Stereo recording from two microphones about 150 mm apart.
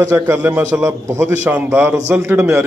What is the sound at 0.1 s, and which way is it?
A man's voice, 15° right (ahead or behind).